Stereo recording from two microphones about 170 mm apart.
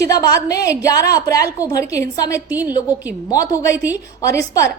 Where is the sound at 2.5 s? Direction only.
10° right (ahead or behind).